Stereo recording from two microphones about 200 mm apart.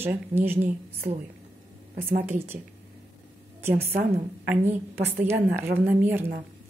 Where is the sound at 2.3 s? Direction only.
10° right (ahead or behind).